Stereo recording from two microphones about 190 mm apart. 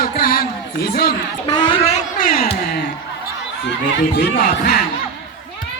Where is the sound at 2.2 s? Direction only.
45° left (ahead or behind).